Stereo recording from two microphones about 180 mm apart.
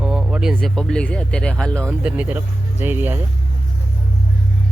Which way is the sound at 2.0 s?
5° right (ahead or behind).